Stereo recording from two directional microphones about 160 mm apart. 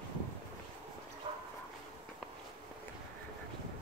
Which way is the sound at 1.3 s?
35° right (ahead or behind).